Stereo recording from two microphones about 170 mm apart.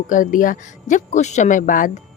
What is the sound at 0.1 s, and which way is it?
A woman's voice, 50° left (ahead or behind).